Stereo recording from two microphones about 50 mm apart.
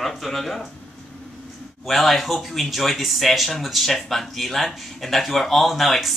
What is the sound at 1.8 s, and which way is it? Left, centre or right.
Speech, centre.